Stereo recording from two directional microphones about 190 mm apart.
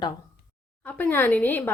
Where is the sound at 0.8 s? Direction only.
10° left (ahead or behind).